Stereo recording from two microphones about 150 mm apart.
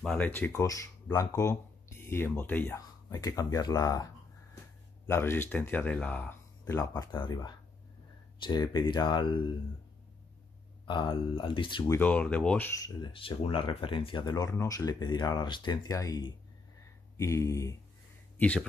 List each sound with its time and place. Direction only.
0.0 s speech: 5° left (ahead or behind)
0.5 s speech: 20° left (ahead or behind)
6.8 s speech: 25° left (ahead or behind)
10.9 s speech: 30° left (ahead or behind)
11.9 s speech: 10° left (ahead or behind)
12.8 s speech: 35° left (ahead or behind)